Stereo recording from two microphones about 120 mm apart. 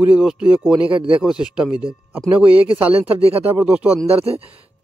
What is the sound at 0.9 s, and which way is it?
Speech, 45° right (ahead or behind).